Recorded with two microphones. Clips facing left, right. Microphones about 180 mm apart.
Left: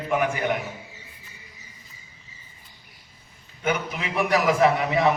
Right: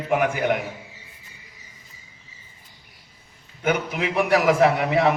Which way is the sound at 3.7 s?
60° right (ahead or behind).